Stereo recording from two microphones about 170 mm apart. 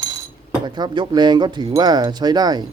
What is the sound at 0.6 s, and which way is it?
Speech, 25° right (ahead or behind).